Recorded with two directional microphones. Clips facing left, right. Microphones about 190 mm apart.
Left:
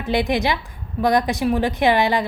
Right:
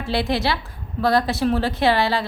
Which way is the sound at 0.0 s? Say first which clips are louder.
Left 2 dB; 15° left (ahead or behind).